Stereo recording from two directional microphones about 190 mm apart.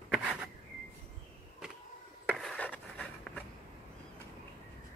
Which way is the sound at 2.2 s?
5° left (ahead or behind).